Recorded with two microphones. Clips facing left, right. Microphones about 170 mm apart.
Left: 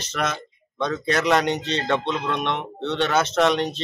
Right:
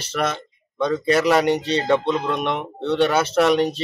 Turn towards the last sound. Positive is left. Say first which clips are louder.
# right 3 dB
turn(degrees=-10)  # may be behind; listen again after turning